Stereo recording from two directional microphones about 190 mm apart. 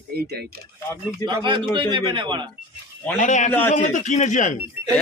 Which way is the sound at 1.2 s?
25° right (ahead or behind).